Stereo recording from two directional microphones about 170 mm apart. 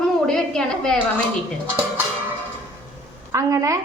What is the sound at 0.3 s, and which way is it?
Speech, 5° left (ahead or behind).